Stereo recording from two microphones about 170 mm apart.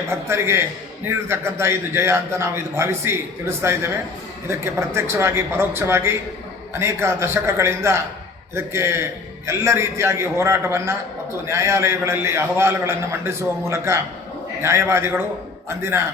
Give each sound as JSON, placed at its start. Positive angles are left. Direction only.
{"t": 0.1, "sound": "a man's voice", "side_deg": -15}
{"t": 4.9, "sound": "a man's voice", "side_deg": -15}